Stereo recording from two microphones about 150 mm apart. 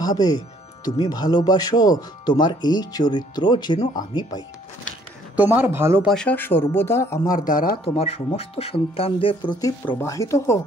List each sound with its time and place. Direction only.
0.0 s speech: 25° left (ahead or behind)
5.3 s speech: 10° right (ahead or behind)
6.0 s speech: 5° left (ahead or behind)
7.2 s speech: 65° left (ahead or behind)
7.8 s speech: 45° left (ahead or behind); by 10.6 s 20° left (ahead or behind)